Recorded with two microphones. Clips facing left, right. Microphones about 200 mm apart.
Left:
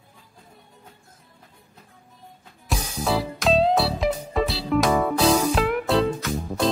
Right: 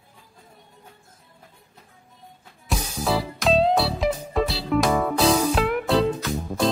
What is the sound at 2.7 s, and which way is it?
Music, centre (ahead or behind).